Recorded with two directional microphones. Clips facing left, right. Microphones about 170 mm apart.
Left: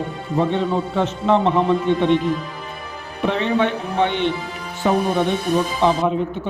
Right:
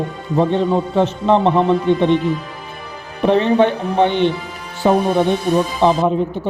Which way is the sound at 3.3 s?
35° right (ahead or behind).